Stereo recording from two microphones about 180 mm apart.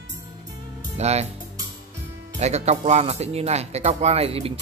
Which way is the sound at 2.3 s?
40° right (ahead or behind).